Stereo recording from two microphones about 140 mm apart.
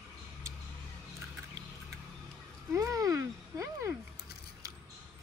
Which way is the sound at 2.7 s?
25° right (ahead or behind).